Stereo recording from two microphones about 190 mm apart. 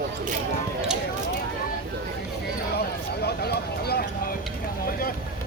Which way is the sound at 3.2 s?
55° left (ahead or behind).